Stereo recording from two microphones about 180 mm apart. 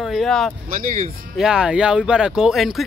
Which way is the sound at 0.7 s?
45° right (ahead or behind).